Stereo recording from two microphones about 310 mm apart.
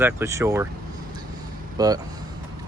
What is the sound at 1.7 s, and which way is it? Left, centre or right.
Speech, centre.